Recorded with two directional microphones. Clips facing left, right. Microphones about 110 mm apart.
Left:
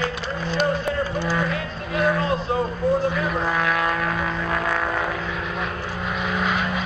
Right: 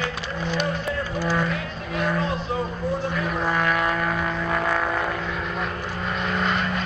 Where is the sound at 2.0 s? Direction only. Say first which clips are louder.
Left 4 dB; centre (ahead or behind).